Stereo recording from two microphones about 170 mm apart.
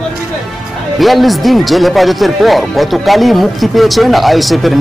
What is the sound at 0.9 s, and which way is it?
Speech, centre (ahead or behind).